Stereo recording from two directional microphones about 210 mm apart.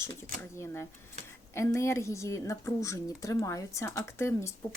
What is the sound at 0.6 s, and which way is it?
Speech, 10° left (ahead or behind).